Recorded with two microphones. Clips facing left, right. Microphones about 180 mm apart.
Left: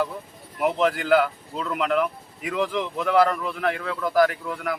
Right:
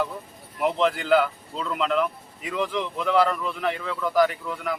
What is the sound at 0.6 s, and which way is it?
Speech, 10° left (ahead or behind).